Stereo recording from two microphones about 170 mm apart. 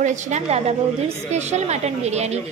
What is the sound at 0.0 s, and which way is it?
A woman's voice, 45° right (ahead or behind).